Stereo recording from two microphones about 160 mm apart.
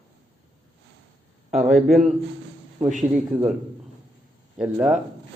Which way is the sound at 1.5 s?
50° right (ahead or behind).